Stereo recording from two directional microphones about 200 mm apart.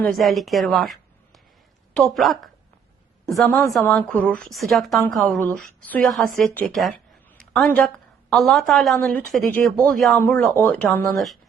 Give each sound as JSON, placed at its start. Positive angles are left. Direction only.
{"t": 0.0, "sound": "a woman's voice", "side_deg": 0}